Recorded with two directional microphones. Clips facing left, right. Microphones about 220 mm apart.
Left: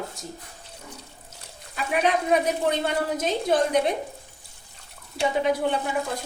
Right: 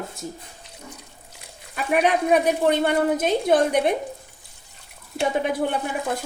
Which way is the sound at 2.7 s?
55° right (ahead or behind).